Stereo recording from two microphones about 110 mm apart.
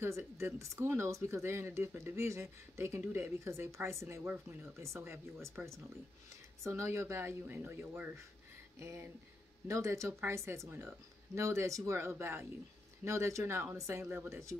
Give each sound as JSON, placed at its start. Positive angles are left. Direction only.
{"t": 0.0, "sound": "speech", "side_deg": -25}
{"t": 9.7, "sound": "speech", "side_deg": -30}